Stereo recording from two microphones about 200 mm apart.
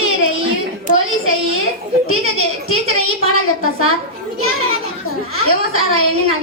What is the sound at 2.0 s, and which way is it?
A woman's voice, 90° left.